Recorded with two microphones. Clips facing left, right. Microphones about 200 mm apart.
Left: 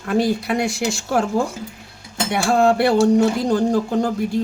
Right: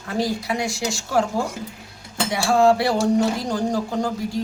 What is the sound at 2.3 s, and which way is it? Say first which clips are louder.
Speech: left 1 dB; 60° left (ahead or behind).